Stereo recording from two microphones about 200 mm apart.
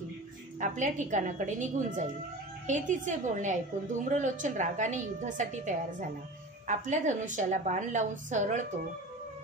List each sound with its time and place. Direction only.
0.6 s a woman's voice: 40° right (ahead or behind)